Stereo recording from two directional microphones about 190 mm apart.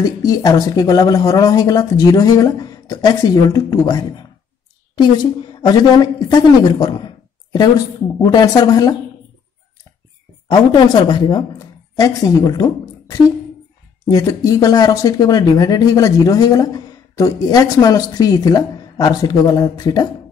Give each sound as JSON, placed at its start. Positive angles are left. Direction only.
{"t": 0.0, "sound": "speech", "side_deg": 20}
{"t": 10.5, "sound": "speech", "side_deg": 20}